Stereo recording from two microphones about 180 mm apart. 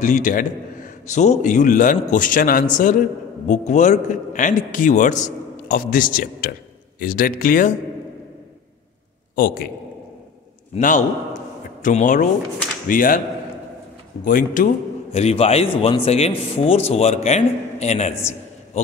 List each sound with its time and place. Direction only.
0.0 s a man's voice: 45° left (ahead or behind)
9.3 s a man's voice: 50° left (ahead or behind)
10.7 s a man's voice: 45° left (ahead or behind)
14.2 s a man's voice: 45° left (ahead or behind)
15.1 s a man's voice: 35° left (ahead or behind)